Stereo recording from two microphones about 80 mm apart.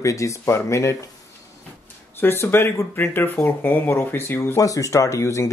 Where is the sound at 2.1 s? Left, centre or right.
Left.